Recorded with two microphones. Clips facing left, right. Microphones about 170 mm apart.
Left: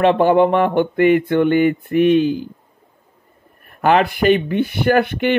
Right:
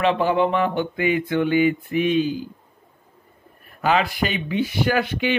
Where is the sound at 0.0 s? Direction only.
55° left (ahead or behind).